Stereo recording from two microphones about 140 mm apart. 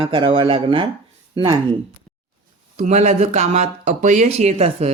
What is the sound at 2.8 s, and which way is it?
Speech, 55° right (ahead or behind).